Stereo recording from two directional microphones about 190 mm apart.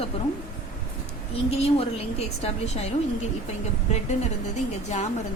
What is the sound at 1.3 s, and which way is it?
A woman's voice, 30° left (ahead or behind).